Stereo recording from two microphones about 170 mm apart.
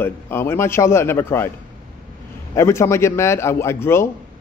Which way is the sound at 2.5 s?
15° left (ahead or behind).